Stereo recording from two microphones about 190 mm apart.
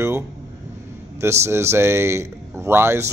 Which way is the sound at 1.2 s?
15° right (ahead or behind).